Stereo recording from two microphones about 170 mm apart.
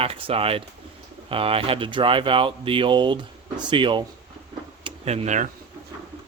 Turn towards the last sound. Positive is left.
turn(degrees=-40)  # may be behind; listen again after turning